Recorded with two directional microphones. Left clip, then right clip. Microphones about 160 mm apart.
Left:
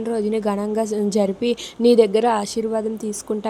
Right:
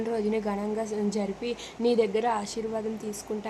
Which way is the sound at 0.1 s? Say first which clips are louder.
Left 8 dB; 25° left (ahead or behind).